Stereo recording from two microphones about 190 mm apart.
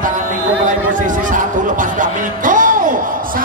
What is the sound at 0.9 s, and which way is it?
Speech, 45° right (ahead or behind).